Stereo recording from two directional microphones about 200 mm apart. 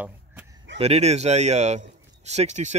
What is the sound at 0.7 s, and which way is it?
Speech, 30° right (ahead or behind).